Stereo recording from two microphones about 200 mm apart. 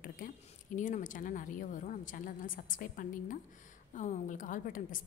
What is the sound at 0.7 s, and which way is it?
A woman's voice, 40° left (ahead or behind).